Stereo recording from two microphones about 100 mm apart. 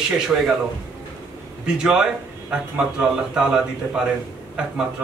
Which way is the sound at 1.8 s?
10° right (ahead or behind).